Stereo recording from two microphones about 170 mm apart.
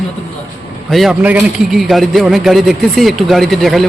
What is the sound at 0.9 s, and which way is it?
A man's voice, centre (ahead or behind).